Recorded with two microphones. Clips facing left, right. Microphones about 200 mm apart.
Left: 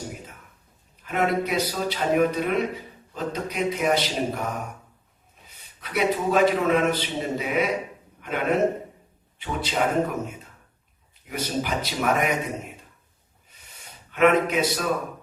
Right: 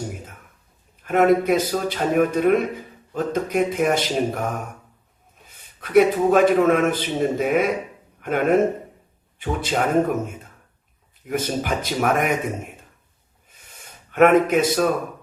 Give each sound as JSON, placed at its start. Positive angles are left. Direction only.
{"t": 1.0, "sound": "a man's voice", "side_deg": -50}
{"t": 13.5, "sound": "gasp", "side_deg": -50}